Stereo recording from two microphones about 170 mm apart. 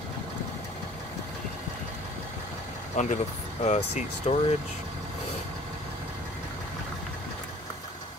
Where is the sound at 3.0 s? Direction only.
45° left (ahead or behind).